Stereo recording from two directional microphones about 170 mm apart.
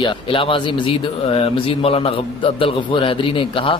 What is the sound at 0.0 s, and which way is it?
A man's voice, 30° left (ahead or behind).